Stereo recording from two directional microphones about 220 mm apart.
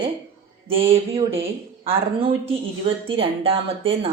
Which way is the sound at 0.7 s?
25° right (ahead or behind).